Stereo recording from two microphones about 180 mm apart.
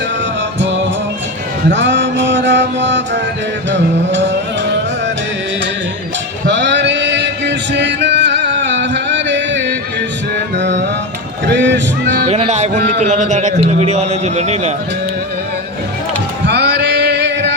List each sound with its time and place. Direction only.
1.7 s music: 85° right
6.5 s a sound: 80° right
10.6 s music: 75° right (ahead or behind)
12.3 s a man's voice: 40° right (ahead or behind)
16.5 s music: 75° right (ahead or behind)